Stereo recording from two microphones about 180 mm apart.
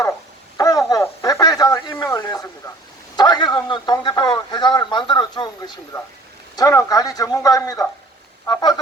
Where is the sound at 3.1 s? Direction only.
25° left (ahead or behind).